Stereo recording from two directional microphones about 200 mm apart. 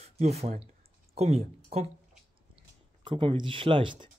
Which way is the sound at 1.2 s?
30° right (ahead or behind).